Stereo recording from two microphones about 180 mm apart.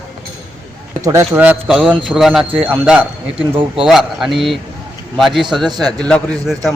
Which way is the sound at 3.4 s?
30° right (ahead or behind).